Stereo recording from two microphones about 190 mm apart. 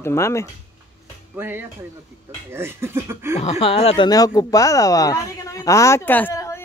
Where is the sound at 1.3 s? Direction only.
10° right (ahead or behind).